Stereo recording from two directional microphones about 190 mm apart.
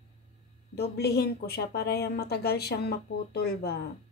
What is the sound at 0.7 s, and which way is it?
A woman's voice, 60° left (ahead or behind).